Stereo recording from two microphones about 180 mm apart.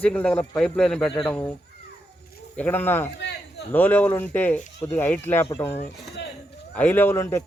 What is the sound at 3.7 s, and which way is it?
Speech, 10° left (ahead or behind).